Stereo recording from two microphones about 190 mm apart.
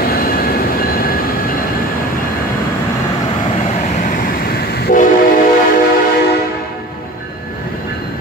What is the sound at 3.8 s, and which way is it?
Train, 45° left (ahead or behind).